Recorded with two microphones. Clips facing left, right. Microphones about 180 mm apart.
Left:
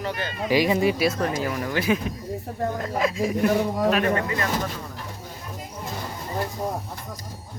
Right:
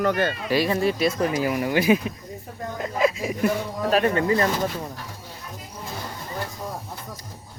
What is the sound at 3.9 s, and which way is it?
Speech, 30° right (ahead or behind).